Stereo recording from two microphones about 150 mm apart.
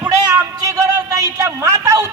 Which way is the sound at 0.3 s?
20° right (ahead or behind).